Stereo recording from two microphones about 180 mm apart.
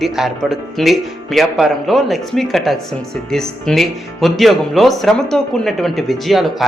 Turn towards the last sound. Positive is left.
turn(degrees=0)  # may be behind; listen again after turning